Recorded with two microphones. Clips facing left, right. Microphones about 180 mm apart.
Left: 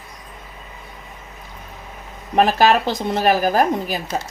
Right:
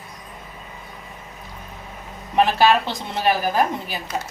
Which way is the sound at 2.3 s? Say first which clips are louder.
Left 2 dB; 45° left (ahead or behind).